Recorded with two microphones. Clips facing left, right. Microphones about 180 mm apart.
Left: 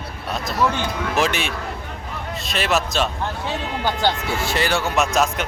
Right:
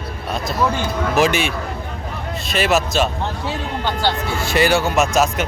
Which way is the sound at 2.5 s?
Centre (ahead or behind).